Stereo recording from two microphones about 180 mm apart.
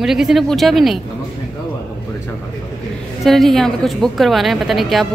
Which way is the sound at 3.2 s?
Centre (ahead or behind).